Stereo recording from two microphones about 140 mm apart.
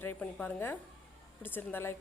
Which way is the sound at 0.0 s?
10° left (ahead or behind).